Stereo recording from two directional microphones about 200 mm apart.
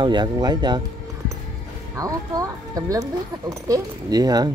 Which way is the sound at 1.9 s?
15° right (ahead or behind).